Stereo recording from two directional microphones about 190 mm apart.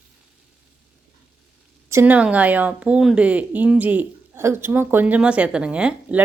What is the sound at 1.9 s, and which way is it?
A woman's voice, 10° right (ahead or behind).